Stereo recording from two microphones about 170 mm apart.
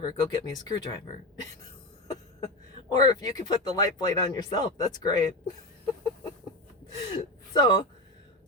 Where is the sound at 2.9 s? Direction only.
25° left (ahead or behind).